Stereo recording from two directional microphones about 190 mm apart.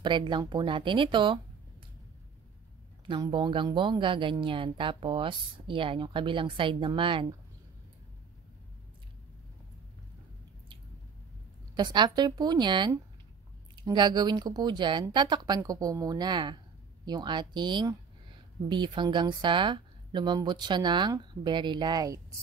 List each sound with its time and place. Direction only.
0.0 s speech: 25° right (ahead or behind)
3.1 s speech: 25° right (ahead or behind)
11.7 s speech: 25° right (ahead or behind)